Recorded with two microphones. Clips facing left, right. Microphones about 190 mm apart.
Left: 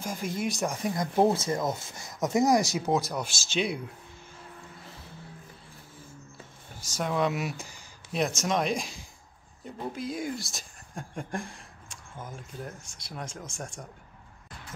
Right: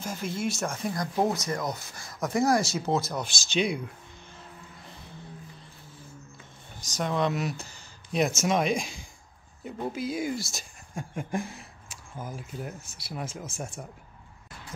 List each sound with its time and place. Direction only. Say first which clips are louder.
0.0 s speech: even; 15° left (ahead or behind)
6.8 s speech: even; 5° left (ahead or behind)
8.4 s speech: right 2 dB; 5° right (ahead or behind)